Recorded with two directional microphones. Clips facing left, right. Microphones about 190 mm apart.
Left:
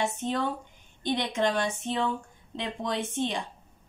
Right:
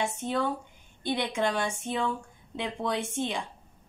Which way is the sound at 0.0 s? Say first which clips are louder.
Even; 10° right (ahead or behind).